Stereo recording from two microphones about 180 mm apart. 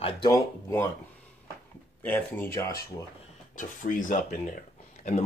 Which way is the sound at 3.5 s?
45° left (ahead or behind).